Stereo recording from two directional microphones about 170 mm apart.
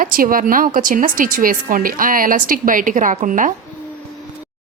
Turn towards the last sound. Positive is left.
turn(degrees=-50)  # may be behind; listen again after turning